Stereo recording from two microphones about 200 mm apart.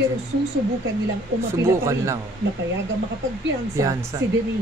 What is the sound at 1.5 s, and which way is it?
Speech, 15° right (ahead or behind).